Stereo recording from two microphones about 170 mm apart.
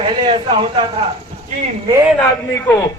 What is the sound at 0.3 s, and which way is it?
Speech, 30° right (ahead or behind).